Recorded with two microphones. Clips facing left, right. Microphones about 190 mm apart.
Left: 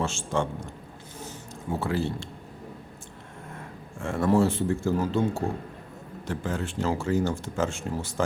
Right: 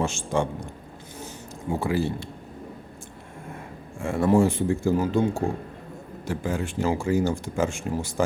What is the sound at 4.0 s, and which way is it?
Speech, 10° right (ahead or behind).